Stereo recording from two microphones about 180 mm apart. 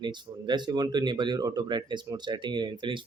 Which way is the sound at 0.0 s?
25° right (ahead or behind).